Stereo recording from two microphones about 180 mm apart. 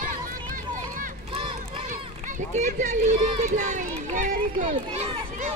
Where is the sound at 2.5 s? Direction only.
45° right (ahead or behind).